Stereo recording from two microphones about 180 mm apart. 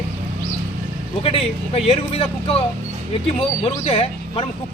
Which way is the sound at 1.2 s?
35° left (ahead or behind).